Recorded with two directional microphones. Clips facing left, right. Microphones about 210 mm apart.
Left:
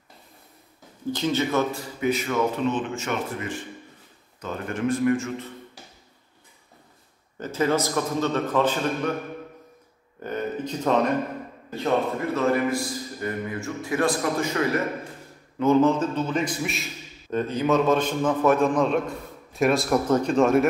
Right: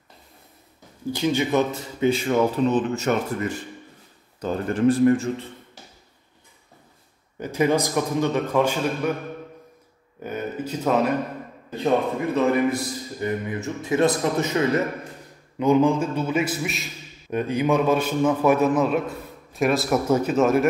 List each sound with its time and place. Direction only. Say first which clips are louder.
1.1 s speech: right 2 dB; 15° right (ahead or behind); by 5.5 s 35° right (ahead or behind)
7.3 s a man's voice: right 2 dB; 15° right (ahead or behind)
10.2 s a man's voice: even; 5° right (ahead or behind)
12.4 s a man's voice: right 2 dB; 20° right (ahead or behind); by 16.9 s centre (ahead or behind)
17.3 s a man's voice: right 1 dB; 10° right (ahead or behind)